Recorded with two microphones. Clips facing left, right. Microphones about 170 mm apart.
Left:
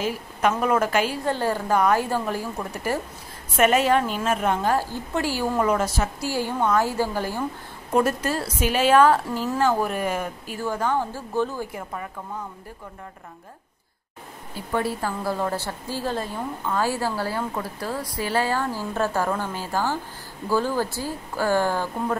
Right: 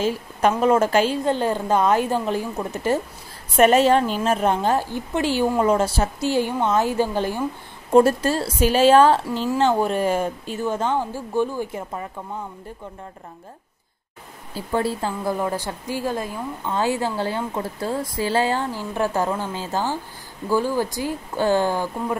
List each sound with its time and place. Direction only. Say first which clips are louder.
0.0 s a woman's voice: right 3 dB; 30° right (ahead or behind)
7.9 s a woman's voice: right 6 dB; 30° right (ahead or behind)
14.5 s a woman's voice: right 3 dB; 30° right (ahead or behind)